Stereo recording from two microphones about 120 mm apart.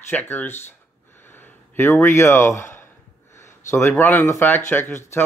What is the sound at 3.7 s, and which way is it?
Speech, 20° left (ahead or behind).